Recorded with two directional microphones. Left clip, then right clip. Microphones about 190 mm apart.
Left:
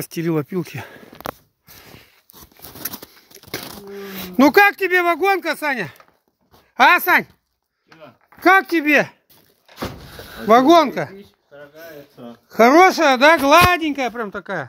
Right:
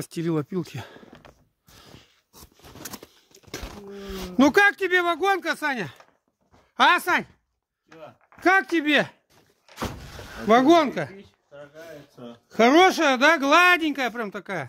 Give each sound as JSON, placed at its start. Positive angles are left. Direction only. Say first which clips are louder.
{"t": 0.0, "sound": "speech", "louder": "left 5 dB", "side_deg": 0}
{"t": 3.3, "sound": "a sound", "louder": "left 8 dB", "side_deg": 5}
{"t": 3.9, "sound": "speech", "louder": "left 4 dB", "side_deg": 0}
{"t": 8.4, "sound": "speech", "louder": "left 6 dB", "side_deg": 0}
{"t": 10.4, "sound": "speech", "louder": "left 6 dB", "side_deg": -10}
{"t": 14.1, "sound": "speech", "louder": "left 5 dB", "side_deg": -20}